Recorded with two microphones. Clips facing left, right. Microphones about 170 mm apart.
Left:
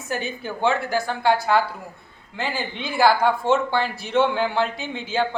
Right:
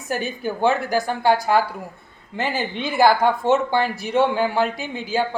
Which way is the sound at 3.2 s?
15° right (ahead or behind).